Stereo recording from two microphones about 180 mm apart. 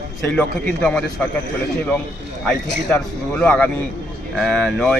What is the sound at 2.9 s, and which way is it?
A man's voice, 10° left (ahead or behind).